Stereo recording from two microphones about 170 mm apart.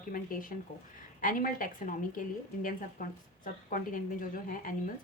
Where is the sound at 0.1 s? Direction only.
55° left (ahead or behind).